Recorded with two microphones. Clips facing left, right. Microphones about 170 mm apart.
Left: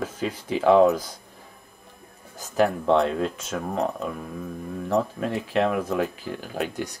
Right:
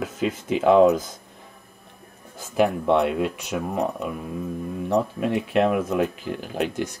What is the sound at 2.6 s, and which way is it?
Speech, 15° right (ahead or behind).